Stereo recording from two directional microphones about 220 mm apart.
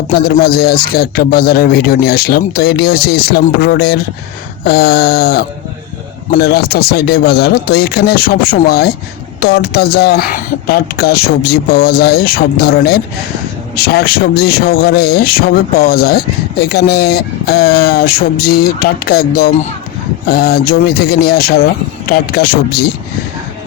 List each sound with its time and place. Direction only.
0.1 s speech: 45° left (ahead or behind)